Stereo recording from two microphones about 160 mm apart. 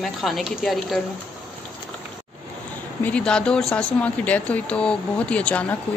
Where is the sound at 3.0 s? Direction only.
5° left (ahead or behind).